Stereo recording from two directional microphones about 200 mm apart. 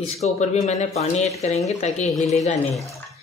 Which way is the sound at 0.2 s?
35° left (ahead or behind).